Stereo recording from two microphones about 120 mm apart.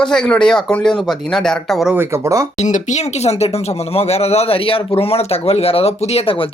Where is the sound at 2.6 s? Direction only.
80° left; by 6.3 s 60° left (ahead or behind).